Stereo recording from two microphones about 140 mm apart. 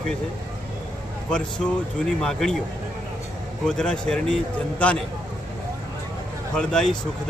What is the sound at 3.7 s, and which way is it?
Speech, 5° left (ahead or behind).